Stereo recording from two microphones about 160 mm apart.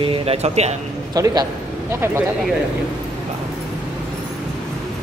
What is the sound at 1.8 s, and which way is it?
Speech, 15° right (ahead or behind).